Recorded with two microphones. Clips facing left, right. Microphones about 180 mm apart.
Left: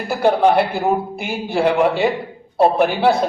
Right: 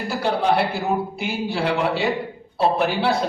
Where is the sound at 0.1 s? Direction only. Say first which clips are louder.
Left 6 dB; 55° left (ahead or behind).